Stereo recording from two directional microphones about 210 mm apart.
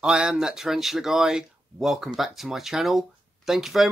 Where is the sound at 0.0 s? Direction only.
5° right (ahead or behind).